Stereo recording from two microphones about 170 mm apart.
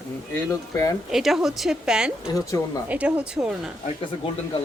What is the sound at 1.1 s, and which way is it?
A woman's voice, centre (ahead or behind).